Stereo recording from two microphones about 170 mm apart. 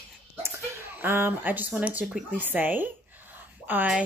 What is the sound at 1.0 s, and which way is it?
Speech, 15° right (ahead or behind).